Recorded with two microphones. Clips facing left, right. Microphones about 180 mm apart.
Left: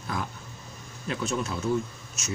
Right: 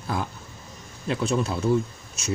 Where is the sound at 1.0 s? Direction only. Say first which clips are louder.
Right 5 dB; 30° right (ahead or behind).